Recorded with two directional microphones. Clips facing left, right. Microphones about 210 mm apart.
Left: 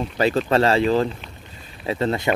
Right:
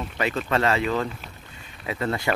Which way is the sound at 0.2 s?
35° left (ahead or behind).